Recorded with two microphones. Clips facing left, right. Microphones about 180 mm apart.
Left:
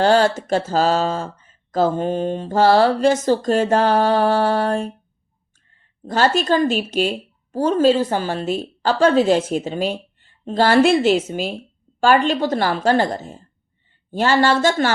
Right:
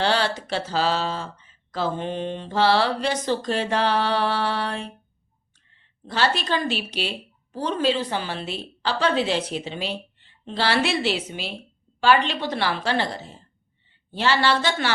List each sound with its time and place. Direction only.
0.0 s speech: 45° left (ahead or behind)